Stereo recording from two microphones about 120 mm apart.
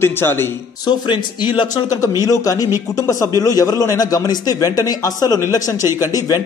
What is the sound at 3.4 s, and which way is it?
Speech, 30° left (ahead or behind).